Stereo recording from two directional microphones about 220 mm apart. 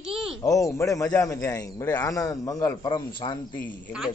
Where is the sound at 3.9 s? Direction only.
5° right (ahead or behind).